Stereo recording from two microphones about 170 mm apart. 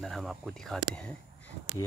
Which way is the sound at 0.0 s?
Centre (ahead or behind).